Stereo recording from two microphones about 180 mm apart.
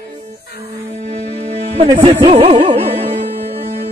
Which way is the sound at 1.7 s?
30° right (ahead or behind).